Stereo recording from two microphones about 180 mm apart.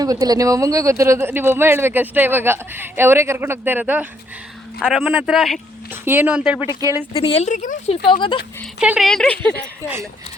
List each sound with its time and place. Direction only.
0.0 s a man's voice: 20° right (ahead or behind); by 5.5 s centre (ahead or behind)
5.9 s speech: 10° right (ahead or behind)
6.7 s speech: 20° right (ahead or behind)
7.1 s speech: 30° left (ahead or behind)
8.0 s speech: 25° left (ahead or behind)
8.8 s a man's voice: 5° right (ahead or behind)